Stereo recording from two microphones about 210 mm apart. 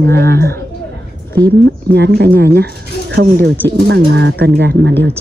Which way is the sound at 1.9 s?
50° right (ahead or behind).